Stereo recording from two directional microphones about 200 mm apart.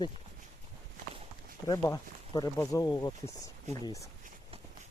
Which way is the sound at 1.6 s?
20° left (ahead or behind).